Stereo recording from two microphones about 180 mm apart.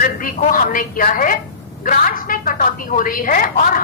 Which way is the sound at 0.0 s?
50° left (ahead or behind).